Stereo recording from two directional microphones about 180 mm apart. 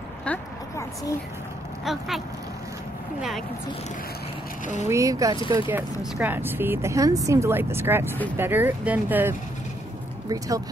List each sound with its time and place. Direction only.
0.2 s a sound: 5° left (ahead or behind)
1.9 s speech: centre (ahead or behind)
4.8 s speech: 15° right (ahead or behind)